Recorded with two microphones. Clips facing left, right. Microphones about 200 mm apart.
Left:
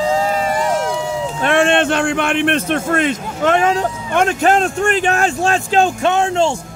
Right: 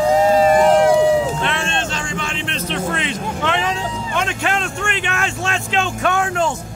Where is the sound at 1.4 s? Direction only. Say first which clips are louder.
Left 9 dB; 55° left (ahead or behind); by 5.9 s 40° left (ahead or behind).